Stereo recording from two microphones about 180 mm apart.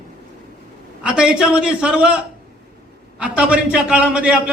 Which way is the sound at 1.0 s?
5° right (ahead or behind).